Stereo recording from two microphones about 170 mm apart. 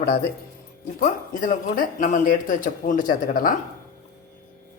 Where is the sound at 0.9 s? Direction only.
55° left (ahead or behind).